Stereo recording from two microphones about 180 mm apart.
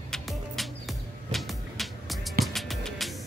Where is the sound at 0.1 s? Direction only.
Centre (ahead or behind).